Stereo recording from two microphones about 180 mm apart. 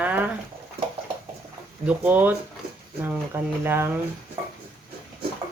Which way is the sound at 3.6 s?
10° right (ahead or behind).